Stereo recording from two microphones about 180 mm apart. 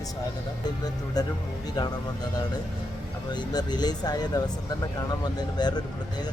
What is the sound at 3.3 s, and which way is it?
Speech, 25° left (ahead or behind).